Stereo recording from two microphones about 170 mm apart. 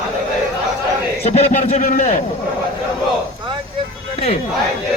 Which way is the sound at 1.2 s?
40° left (ahead or behind).